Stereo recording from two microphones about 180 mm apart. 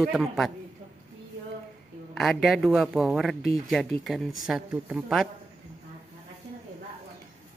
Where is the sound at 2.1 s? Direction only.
Centre (ahead or behind).